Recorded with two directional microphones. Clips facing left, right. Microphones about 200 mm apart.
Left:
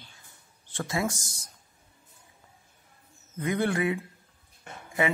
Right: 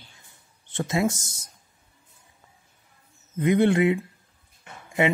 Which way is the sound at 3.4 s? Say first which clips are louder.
Right 7 dB; 25° right (ahead or behind).